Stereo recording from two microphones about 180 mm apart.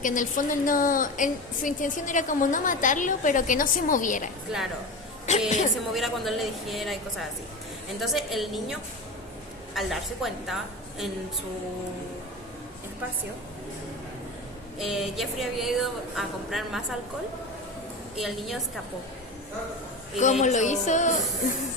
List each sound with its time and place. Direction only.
0.0 s a woman's voice: 45° left (ahead or behind)
4.5 s a woman's voice: 5° right (ahead or behind)
5.5 s speech: 40° left (ahead or behind)
5.9 s a woman's voice: centre (ahead or behind)
8.0 s a woman's voice: centre (ahead or behind)
14.8 s a woman's voice: centre (ahead or behind)
18.2 s a woman's voice: centre (ahead or behind)
20.4 s speech: 40° left (ahead or behind)